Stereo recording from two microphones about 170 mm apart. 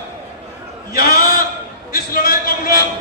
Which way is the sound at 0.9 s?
65° left (ahead or behind).